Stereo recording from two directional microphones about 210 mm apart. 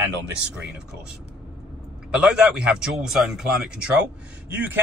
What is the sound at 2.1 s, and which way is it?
A man's voice, 5° right (ahead or behind).